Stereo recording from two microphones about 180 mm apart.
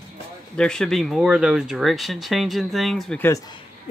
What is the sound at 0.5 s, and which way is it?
Speech, 5° left (ahead or behind).